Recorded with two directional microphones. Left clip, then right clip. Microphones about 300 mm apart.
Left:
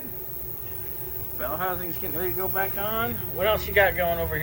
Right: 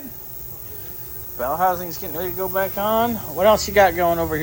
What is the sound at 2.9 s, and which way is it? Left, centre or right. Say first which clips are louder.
Speech: right 8 dB; right.